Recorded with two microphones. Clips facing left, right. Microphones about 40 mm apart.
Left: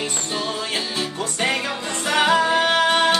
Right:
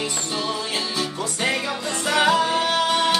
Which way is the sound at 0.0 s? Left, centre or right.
Left.